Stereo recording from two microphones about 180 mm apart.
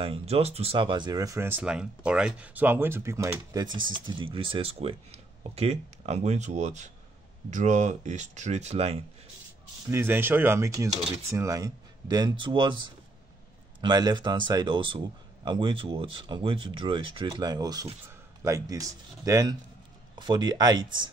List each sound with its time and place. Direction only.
0.0 s speech: 35° right (ahead or behind)
9.8 s speech: 10° right (ahead or behind)